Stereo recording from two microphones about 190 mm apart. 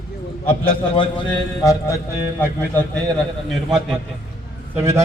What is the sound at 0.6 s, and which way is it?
A man's voice, 25° left (ahead or behind).